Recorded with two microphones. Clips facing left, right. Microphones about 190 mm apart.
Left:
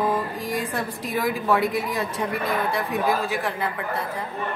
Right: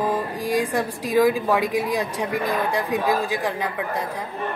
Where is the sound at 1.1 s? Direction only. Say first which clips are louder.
Right 8 dB; 90° right.